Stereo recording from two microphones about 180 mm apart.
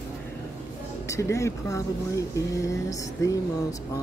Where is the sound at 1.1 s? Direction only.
15° left (ahead or behind).